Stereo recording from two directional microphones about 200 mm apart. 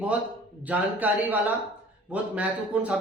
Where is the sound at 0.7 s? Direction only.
10° right (ahead or behind).